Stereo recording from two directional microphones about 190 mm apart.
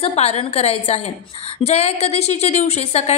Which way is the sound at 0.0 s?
30° left (ahead or behind).